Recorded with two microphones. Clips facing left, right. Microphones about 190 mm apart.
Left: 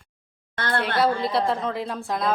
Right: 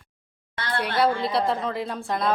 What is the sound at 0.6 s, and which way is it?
Speech, 50° left (ahead or behind).